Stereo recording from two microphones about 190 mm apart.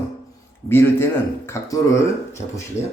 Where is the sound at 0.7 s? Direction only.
10° left (ahead or behind).